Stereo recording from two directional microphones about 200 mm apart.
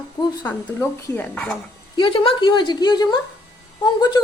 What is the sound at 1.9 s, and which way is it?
A woman's voice, 25° left (ahead or behind).